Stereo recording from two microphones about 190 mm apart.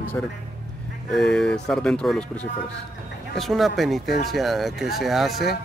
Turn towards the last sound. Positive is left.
turn(degrees=0)  # may be behind; listen again after turning